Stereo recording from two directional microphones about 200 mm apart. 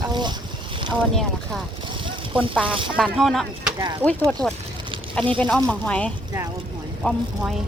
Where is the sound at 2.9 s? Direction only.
Centre (ahead or behind).